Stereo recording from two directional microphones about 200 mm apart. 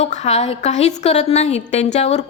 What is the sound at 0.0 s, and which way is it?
A woman's voice, 35° left (ahead or behind).